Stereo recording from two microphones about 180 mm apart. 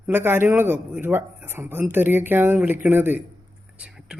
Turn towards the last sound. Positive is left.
turn(degrees=-10)  # may be behind; listen again after turning